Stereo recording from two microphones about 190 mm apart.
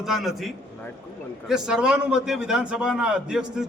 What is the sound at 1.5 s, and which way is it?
A man's voice, 5° right (ahead or behind).